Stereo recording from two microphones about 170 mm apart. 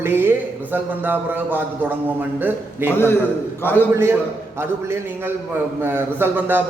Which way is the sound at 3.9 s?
15° right (ahead or behind).